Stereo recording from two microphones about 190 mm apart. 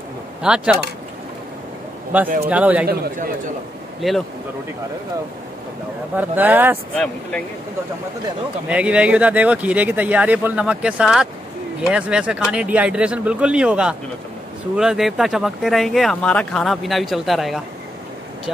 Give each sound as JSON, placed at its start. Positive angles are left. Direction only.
{"t": 0.4, "sound": "speech", "side_deg": -5}
{"t": 2.1, "sound": "speech", "side_deg": -10}
{"t": 2.9, "sound": "speech", "side_deg": -50}
{"t": 4.0, "sound": "speech", "side_deg": 0}
{"t": 6.1, "sound": "speech", "side_deg": -10}
{"t": 8.6, "sound": "speech", "side_deg": -5}